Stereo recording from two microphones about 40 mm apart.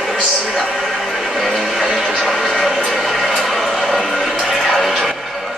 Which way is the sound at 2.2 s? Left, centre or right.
Centre.